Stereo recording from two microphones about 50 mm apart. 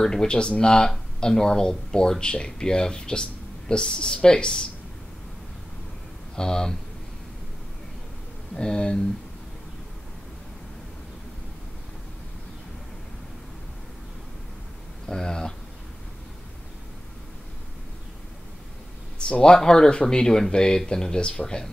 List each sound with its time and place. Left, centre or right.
0.0 s speech: centre
6.3 s speech: centre
8.5 s speech: centre
15.0 s speech: centre
19.4 s speech: centre